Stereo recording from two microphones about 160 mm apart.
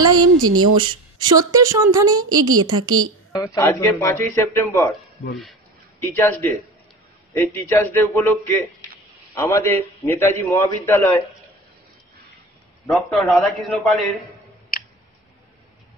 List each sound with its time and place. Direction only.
0.0 s a woman's voice: 25° right (ahead or behind)
3.3 s speech: 20° left (ahead or behind)
6.1 s a man's voice: 10° left (ahead or behind)
12.8 s a man's voice: centre (ahead or behind)